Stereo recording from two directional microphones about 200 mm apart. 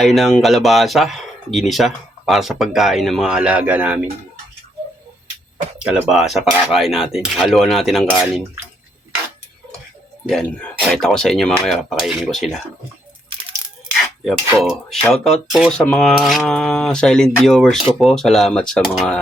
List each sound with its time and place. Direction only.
0.0 s speech: centre (ahead or behind)
5.8 s speech: 5° right (ahead or behind)
10.2 s speech: 5° left (ahead or behind)
14.7 s speech: centre (ahead or behind)